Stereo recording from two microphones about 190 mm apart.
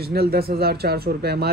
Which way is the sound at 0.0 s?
55° right (ahead or behind).